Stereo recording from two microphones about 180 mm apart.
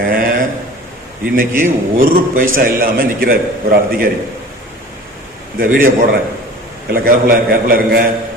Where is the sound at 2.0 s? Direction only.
55° right (ahead or behind).